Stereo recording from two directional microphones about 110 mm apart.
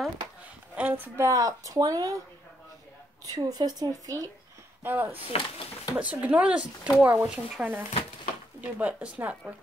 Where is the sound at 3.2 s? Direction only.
35° right (ahead or behind).